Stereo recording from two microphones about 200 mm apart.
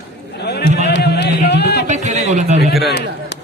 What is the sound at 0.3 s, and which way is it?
Run, 55° left (ahead or behind).